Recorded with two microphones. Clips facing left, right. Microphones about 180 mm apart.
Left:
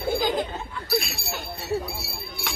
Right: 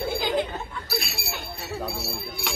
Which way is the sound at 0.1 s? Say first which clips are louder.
Left 4 dB; 45° left (ahead or behind).